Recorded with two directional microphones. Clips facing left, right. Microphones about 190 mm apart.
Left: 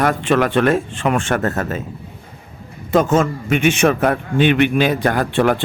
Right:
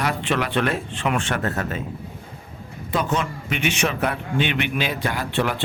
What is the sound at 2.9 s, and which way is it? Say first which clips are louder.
A man's voice: left 9 dB; 45° left (ahead or behind).